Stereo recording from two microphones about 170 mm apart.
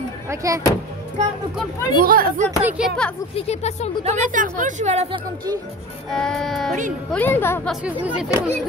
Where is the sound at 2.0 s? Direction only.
55° right (ahead or behind).